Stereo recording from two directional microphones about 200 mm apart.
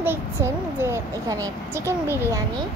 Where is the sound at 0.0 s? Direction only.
10° right (ahead or behind).